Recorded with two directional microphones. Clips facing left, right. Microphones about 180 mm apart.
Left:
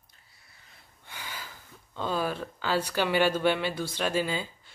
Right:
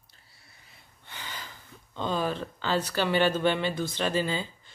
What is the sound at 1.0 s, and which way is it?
Speech, 10° left (ahead or behind).